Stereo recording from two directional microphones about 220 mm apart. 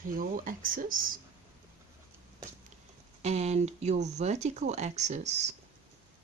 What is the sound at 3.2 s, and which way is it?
Speech, 30° right (ahead or behind).